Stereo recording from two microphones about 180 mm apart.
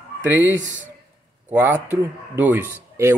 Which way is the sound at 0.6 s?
90° right.